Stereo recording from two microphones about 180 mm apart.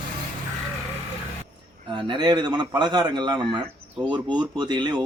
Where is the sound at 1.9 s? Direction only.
25° right (ahead or behind).